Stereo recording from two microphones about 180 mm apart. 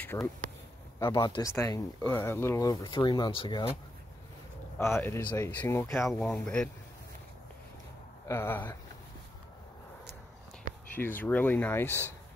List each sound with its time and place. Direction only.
0.0 s speech: 10° left (ahead or behind); by 3.6 s 30° left (ahead or behind)
4.7 s a man's voice: 15° left (ahead or behind)
8.3 s speech: 10° left (ahead or behind)
11.0 s speech: 10° left (ahead or behind)